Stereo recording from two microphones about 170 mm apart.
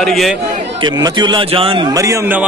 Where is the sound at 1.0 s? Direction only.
25° right (ahead or behind).